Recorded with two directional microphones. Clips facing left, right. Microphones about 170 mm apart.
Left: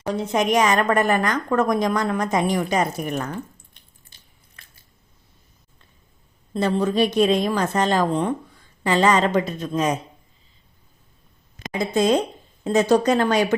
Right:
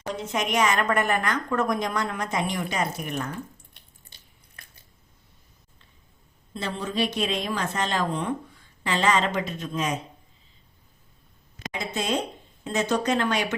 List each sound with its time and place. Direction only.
0.1 s a woman's voice: 40° left (ahead or behind)
6.5 s a woman's voice: 45° left (ahead or behind)
11.7 s a woman's voice: 40° left (ahead or behind)